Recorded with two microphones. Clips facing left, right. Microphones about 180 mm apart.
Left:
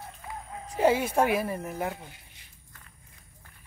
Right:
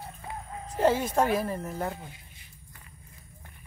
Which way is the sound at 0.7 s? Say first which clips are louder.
Left 1 dB; 10° left (ahead or behind).